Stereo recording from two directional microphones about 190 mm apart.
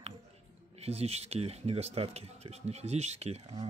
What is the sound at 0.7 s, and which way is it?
Speech, 35° right (ahead or behind).